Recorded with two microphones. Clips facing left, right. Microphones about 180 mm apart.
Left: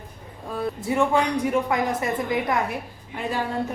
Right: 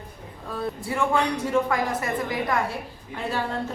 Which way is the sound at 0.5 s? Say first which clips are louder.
Left 4 dB; 20° left (ahead or behind).